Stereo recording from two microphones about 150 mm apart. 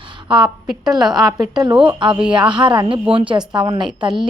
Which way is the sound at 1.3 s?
25° right (ahead or behind).